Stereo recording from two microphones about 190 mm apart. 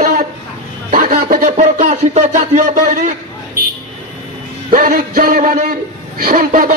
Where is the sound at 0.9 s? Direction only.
50° right (ahead or behind).